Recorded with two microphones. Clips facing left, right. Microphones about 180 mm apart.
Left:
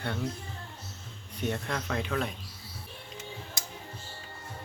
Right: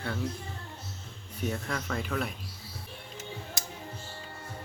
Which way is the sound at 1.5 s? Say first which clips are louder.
Left 2 dB; 5° right (ahead or behind).